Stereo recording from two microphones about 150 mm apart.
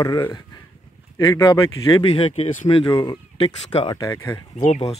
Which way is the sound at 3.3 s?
40° left (ahead or behind).